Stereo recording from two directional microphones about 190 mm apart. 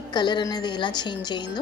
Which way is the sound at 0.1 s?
25° left (ahead or behind).